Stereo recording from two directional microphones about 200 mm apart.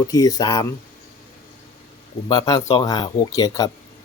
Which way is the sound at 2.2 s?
20° left (ahead or behind).